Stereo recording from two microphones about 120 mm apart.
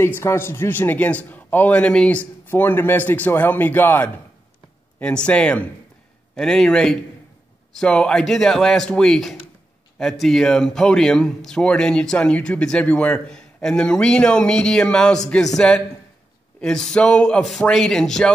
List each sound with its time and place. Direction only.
0.0 s speech: 20° left (ahead or behind); by 18.3 s 5° left (ahead or behind)